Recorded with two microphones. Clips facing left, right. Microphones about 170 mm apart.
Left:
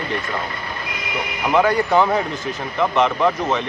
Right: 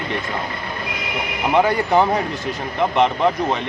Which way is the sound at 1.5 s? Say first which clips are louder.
Even; 15° right (ahead or behind).